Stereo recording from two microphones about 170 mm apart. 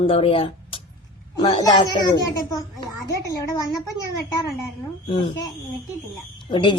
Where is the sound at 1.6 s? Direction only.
20° left (ahead or behind).